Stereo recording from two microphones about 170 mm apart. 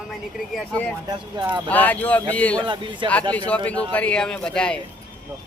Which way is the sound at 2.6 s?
30° right (ahead or behind).